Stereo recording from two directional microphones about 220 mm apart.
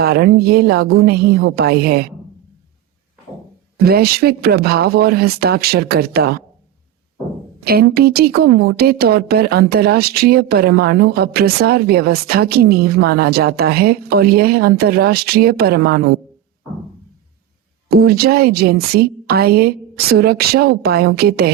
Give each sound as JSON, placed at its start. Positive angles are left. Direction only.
{"t": 0.0, "sound": "a woman's voice", "side_deg": -45}
{"t": 3.8, "sound": "a woman's voice", "side_deg": -45}
{"t": 7.6, "sound": "a woman's voice", "side_deg": -45}
{"t": 17.8, "sound": "a woman's voice", "side_deg": -45}